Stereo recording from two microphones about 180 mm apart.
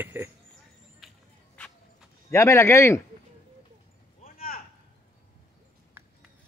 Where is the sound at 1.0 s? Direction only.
Centre (ahead or behind).